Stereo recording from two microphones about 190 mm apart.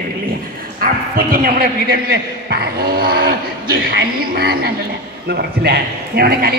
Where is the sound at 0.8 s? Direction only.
50° right (ahead or behind).